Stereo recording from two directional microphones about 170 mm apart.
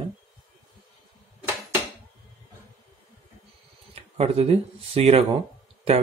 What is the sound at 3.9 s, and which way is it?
Speech, 40° right (ahead or behind).